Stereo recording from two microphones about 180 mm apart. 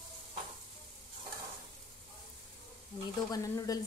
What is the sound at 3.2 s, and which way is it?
Stir, 20° left (ahead or behind).